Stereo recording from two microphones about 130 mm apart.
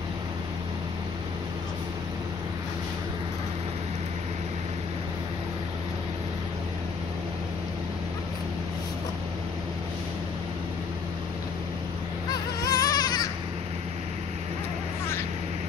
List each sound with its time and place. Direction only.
12.6 s baby cry: 30° left (ahead or behind)